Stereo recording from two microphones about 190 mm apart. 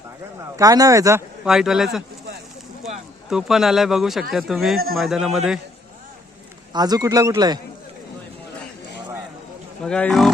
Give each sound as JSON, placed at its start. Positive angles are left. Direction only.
{"t": 0.5, "sound": "speech", "side_deg": -20}
{"t": 1.5, "sound": "speech", "side_deg": 0}
{"t": 3.2, "sound": "speech", "side_deg": 0}
{"t": 6.7, "sound": "a man's voice", "side_deg": -20}
{"t": 9.8, "sound": "speech", "side_deg": 5}